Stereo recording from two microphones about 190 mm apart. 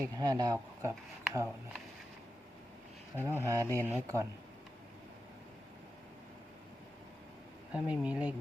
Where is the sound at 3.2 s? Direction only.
15° right (ahead or behind).